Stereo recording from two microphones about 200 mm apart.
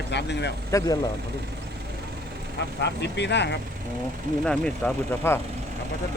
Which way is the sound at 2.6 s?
60° left (ahead or behind).